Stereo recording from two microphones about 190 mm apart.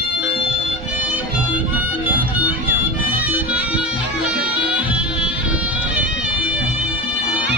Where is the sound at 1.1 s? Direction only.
10° right (ahead or behind).